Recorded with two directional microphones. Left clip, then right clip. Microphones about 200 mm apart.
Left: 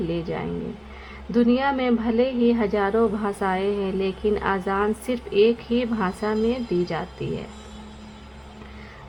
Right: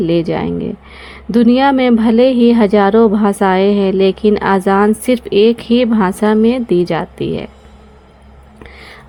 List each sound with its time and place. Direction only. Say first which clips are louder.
0.1 s a woman's voice: right 13 dB; 45° right (ahead or behind)